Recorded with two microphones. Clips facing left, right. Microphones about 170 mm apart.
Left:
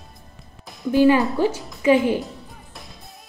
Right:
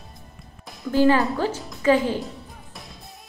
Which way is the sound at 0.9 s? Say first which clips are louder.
Left 2 dB; 15° left (ahead or behind).